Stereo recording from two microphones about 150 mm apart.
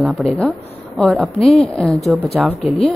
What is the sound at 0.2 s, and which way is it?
Speech, 5° left (ahead or behind).